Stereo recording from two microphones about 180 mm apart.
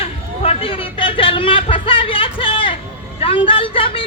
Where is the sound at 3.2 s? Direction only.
30° left (ahead or behind).